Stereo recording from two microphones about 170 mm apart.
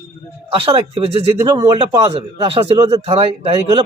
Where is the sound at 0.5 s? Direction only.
30° right (ahead or behind).